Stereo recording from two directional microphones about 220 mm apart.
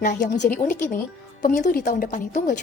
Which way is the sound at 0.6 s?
35° left (ahead or behind).